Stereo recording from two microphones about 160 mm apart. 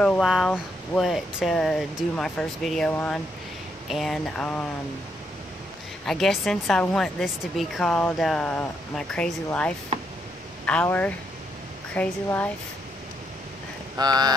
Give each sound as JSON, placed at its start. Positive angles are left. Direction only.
{"t": 0.0, "sound": "a woman's voice", "side_deg": 0}
{"t": 3.9, "sound": "a woman's voice", "side_deg": 0}
{"t": 6.0, "sound": "a woman's voice", "side_deg": 0}
{"t": 13.9, "sound": "speech", "side_deg": -25}